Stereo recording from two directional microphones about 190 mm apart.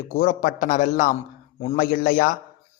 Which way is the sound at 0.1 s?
50° left (ahead or behind).